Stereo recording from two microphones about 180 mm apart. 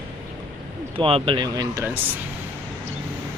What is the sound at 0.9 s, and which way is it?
Speech, 30° right (ahead or behind).